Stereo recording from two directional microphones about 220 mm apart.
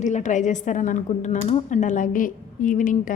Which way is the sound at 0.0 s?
35° left (ahead or behind).